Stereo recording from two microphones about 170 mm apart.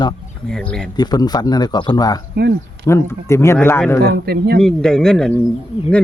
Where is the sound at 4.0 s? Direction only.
70° right (ahead or behind).